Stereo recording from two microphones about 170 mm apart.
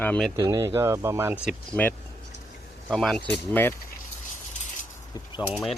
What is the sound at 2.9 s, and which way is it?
Speech, 5° left (ahead or behind).